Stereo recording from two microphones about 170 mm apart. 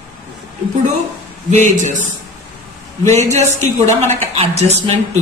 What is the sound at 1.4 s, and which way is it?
Speech, 45° right (ahead or behind).